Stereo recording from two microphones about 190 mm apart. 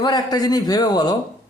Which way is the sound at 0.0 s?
20° left (ahead or behind).